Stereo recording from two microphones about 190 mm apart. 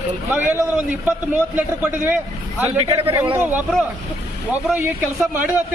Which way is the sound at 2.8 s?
30° right (ahead or behind).